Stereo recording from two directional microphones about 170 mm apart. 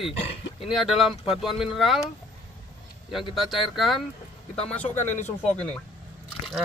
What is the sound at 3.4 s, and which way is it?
Speech, centre (ahead or behind).